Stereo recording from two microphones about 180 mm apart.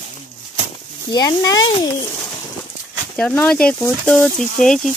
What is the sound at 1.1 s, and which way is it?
Speech, 20° left (ahead or behind).